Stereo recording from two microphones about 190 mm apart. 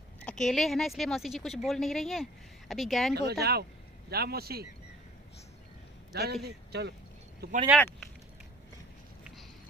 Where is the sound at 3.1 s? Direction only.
55° right (ahead or behind).